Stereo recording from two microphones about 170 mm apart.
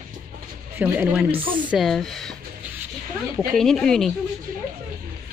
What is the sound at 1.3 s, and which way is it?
Speech, 30° right (ahead or behind).